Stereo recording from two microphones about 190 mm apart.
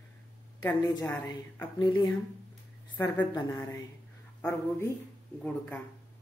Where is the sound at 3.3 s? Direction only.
20° left (ahead or behind).